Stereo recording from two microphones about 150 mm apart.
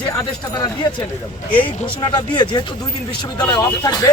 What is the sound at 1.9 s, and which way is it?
Speech, 30° left (ahead or behind).